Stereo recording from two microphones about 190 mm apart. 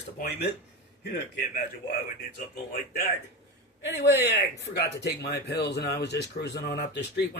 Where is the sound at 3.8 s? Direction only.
60° left (ahead or behind).